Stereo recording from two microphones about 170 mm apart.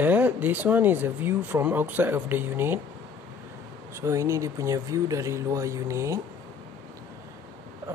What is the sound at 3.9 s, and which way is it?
Speech, 15° right (ahead or behind).